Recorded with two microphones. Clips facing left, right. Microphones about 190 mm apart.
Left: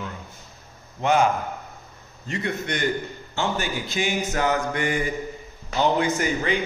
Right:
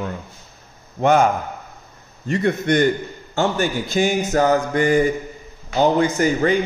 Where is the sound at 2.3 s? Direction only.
50° right (ahead or behind).